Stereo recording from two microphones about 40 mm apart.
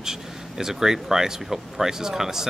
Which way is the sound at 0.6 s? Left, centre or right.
Centre.